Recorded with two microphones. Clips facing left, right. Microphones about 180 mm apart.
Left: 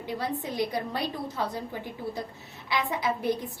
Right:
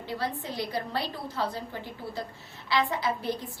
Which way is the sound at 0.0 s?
20° left (ahead or behind).